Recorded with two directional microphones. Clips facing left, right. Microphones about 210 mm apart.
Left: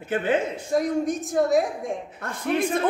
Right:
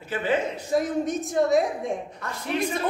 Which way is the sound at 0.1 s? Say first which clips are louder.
Left 2 dB; 50° left (ahead or behind).